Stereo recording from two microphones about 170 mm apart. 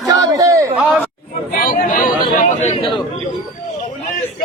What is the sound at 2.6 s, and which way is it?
Speech, 40° left (ahead or behind).